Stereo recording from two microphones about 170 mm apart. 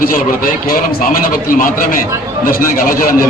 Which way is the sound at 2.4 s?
55° left (ahead or behind).